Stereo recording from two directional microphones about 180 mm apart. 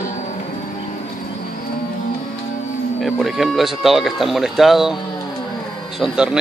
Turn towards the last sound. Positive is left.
turn(degrees=-5)  # may be behind; listen again after turning